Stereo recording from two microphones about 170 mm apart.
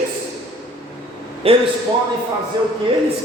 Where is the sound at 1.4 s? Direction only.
35° right (ahead or behind).